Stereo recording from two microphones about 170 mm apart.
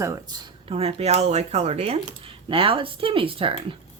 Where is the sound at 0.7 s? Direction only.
40° right (ahead or behind).